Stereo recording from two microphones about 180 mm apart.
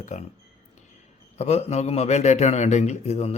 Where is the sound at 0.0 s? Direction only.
40° left (ahead or behind).